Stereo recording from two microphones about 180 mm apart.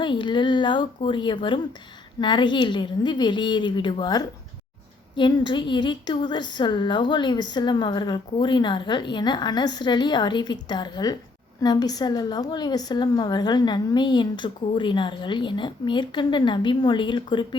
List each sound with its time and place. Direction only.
0.0 s a woman's voice: 25° left (ahead or behind)